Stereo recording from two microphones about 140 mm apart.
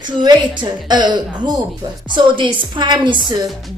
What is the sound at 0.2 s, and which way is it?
A woman's voice, 35° right (ahead or behind).